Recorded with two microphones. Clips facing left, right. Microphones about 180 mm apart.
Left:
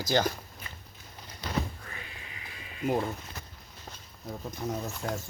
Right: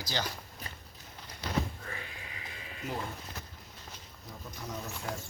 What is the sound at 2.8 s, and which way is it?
Speech, 50° left (ahead or behind).